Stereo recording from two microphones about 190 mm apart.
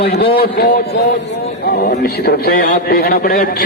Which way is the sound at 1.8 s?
55° left (ahead or behind).